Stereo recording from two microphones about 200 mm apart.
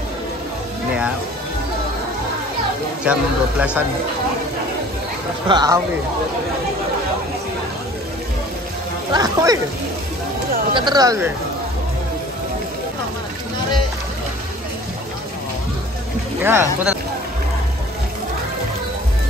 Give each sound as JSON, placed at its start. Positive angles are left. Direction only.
{"t": 3.1, "sound": "speech", "side_deg": -5}
{"t": 5.5, "sound": "speech", "side_deg": -20}
{"t": 9.1, "sound": "speech", "side_deg": -20}
{"t": 10.7, "sound": "speech", "side_deg": -20}
{"t": 16.4, "sound": "speech", "side_deg": -10}